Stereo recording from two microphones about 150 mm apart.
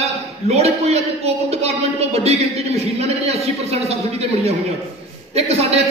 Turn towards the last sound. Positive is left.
turn(degrees=-45)  # may be behind; listen again after turning